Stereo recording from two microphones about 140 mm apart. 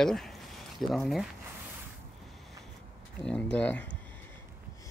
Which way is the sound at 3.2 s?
10° left (ahead or behind).